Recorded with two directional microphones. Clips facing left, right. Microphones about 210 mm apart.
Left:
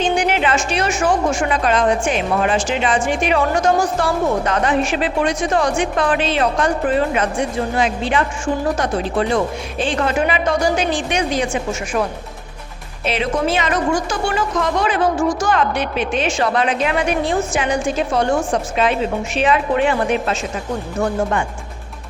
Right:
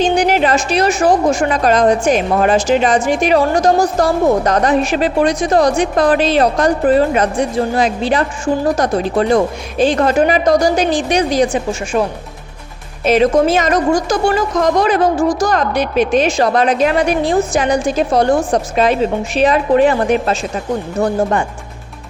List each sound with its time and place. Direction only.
0.0 s a woman's voice: 40° right (ahead or behind)
13.1 s a woman's voice: 45° right (ahead or behind)